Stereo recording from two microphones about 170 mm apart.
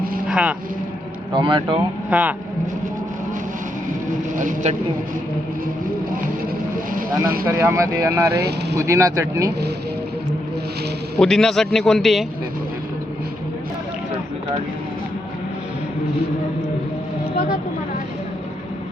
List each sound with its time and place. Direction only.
0.3 s speech: 5° right (ahead or behind)
1.3 s speech: 30° right (ahead or behind)
2.0 s speech: 10° right (ahead or behind)
4.4 s speech: 50° right (ahead or behind)
7.4 s speech: 15° right (ahead or behind)
11.2 s a man's voice: 5° left (ahead or behind)